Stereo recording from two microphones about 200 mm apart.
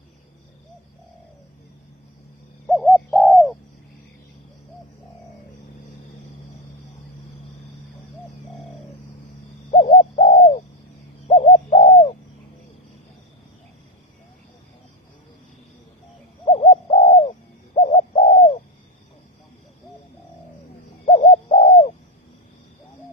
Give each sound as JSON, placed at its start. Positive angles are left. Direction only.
{"t": 2.6, "sound": "bird", "side_deg": 0}
{"t": 9.7, "sound": "bird", "side_deg": 30}
{"t": 16.5, "sound": "bird", "side_deg": 30}
{"t": 21.0, "sound": "bird", "side_deg": 35}